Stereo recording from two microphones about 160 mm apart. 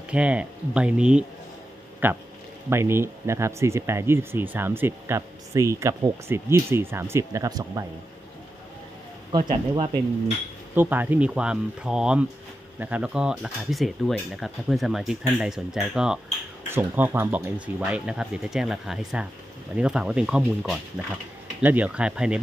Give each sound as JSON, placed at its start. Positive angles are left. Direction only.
{"t": 0.1, "sound": "speech", "side_deg": -10}
{"t": 9.3, "sound": "speech", "side_deg": -30}
{"t": 10.7, "sound": "speech", "side_deg": -10}